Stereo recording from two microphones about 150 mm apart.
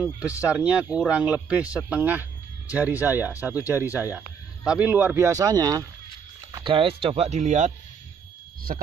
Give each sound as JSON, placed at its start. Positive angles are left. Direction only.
{"t": 0.4, "sound": "speech", "side_deg": -10}
{"t": 8.7, "sound": "speech", "side_deg": -65}